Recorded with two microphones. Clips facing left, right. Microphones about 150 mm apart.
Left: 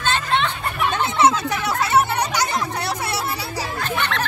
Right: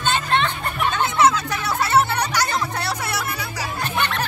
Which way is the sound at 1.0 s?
25° left (ahead or behind).